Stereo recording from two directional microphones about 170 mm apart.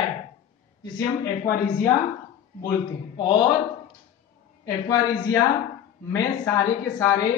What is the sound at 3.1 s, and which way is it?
Speech, 25° left (ahead or behind).